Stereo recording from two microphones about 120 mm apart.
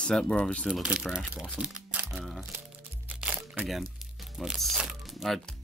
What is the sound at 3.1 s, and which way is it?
Music, 10° right (ahead or behind).